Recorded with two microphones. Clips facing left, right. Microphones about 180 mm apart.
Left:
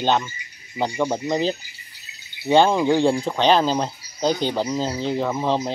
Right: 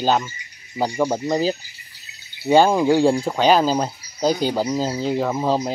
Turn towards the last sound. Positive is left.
turn(degrees=-10)  # may be behind; listen again after turning